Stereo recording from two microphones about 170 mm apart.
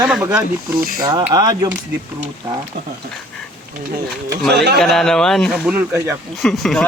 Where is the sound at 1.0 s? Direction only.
25° right (ahead or behind).